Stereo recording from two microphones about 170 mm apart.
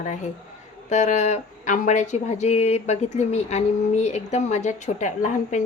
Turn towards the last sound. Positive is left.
turn(degrees=45)  # may be behind; listen again after turning